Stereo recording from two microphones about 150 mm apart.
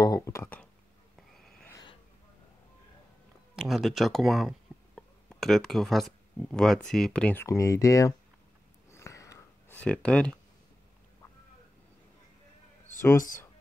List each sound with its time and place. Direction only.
0.0 s speech: 25° left (ahead or behind)
1.1 s a sound: centre (ahead or behind)
3.5 s speech: centre (ahead or behind)
7.4 s speech: 20° left (ahead or behind)
8.9 s a sound: 20° left (ahead or behind)
9.8 s speech: 5° left (ahead or behind)